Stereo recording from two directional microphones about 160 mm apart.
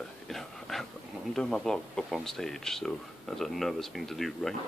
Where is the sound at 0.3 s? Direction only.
Centre (ahead or behind).